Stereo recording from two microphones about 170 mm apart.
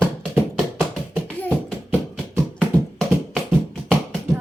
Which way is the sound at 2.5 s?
5° left (ahead or behind).